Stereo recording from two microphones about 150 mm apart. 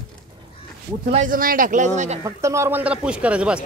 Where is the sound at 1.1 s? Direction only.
65° right (ahead or behind).